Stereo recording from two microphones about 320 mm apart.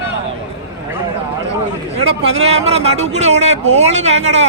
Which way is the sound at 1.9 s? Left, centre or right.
Centre.